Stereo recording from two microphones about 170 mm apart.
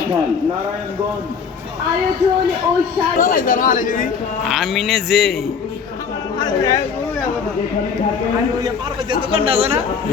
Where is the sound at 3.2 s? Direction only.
55° left (ahead or behind).